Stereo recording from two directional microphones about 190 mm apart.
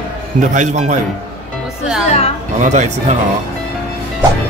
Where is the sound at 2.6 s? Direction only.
40° right (ahead or behind).